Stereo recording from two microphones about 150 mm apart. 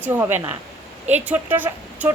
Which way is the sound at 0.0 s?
10° right (ahead or behind).